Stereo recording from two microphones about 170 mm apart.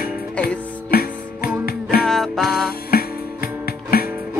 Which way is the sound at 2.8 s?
60° left (ahead or behind).